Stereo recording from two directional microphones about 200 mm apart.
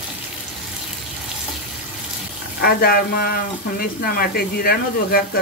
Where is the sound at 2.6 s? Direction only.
50° left (ahead or behind).